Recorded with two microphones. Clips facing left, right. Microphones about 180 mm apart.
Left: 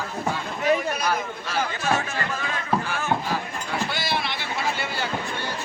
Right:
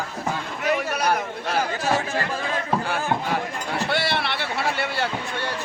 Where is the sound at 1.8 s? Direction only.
35° right (ahead or behind).